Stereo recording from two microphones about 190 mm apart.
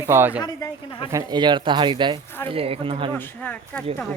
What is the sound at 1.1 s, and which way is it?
Speech, 20° right (ahead or behind).